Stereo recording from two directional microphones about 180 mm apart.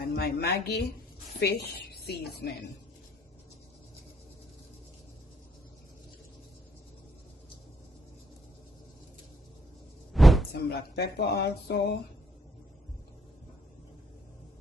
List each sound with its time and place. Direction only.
0.0 s a woman's voice: 60° left (ahead or behind)
10.1 s a sound: centre (ahead or behind)
10.5 s speech: 65° left (ahead or behind)